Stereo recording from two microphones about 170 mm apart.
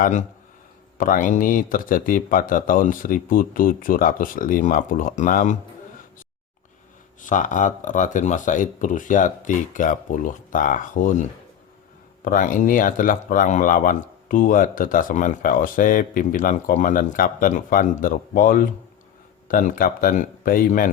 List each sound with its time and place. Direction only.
0.0 s speech: 45° left (ahead or behind)
7.3 s speech: 50° left (ahead or behind)